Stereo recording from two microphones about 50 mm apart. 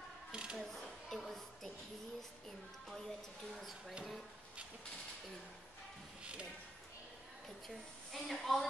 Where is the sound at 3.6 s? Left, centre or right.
Centre.